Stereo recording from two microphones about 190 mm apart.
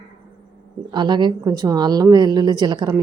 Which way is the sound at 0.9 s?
25° right (ahead or behind).